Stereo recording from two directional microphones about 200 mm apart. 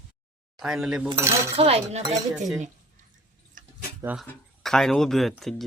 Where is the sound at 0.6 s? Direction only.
Centre (ahead or behind).